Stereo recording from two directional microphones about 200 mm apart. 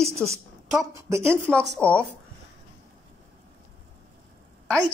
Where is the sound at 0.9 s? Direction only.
15° right (ahead or behind).